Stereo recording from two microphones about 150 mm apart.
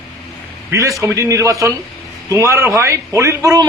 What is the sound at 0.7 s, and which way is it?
A man's voice, 20° right (ahead or behind).